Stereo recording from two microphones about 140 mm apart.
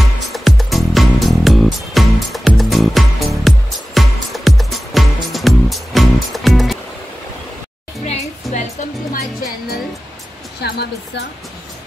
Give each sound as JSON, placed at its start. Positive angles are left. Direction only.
{"t": 0.2, "sound": "music", "side_deg": 0}
{"t": 8.1, "sound": "a sound", "side_deg": 50}
{"t": 9.1, "sound": "music", "side_deg": 90}